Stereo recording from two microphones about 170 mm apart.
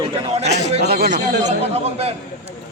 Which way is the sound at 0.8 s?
70° right (ahead or behind).